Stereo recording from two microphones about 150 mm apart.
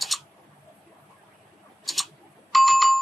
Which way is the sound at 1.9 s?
Centre (ahead or behind).